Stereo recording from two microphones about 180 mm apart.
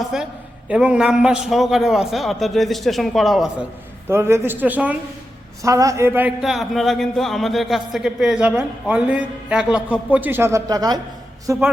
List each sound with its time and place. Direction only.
0.0 s a man's voice: 5° right (ahead or behind)
4.1 s a man's voice: 15° right (ahead or behind)